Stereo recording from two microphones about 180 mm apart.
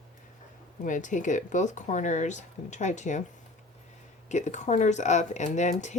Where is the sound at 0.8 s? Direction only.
45° left (ahead or behind).